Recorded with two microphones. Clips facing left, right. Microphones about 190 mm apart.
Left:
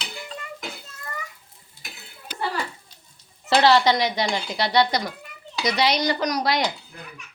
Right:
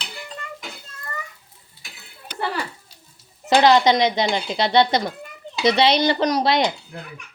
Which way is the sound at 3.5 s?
20° right (ahead or behind).